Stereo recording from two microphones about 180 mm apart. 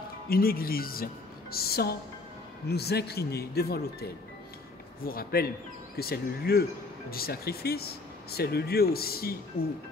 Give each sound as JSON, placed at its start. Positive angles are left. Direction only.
{"t": 0.3, "sound": "a woman's voice", "side_deg": 55}